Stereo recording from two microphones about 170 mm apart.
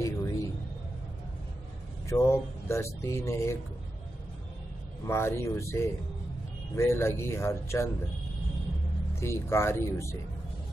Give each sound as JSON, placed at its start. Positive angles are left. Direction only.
{"t": 0.0, "sound": "a sound", "side_deg": 20}
{"t": 2.0, "sound": "speech", "side_deg": 15}
{"t": 5.0, "sound": "speech", "side_deg": 15}
{"t": 9.2, "sound": "speech", "side_deg": 15}